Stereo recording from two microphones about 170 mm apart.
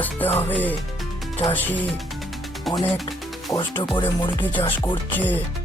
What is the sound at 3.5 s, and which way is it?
Speech, 30° left (ahead or behind).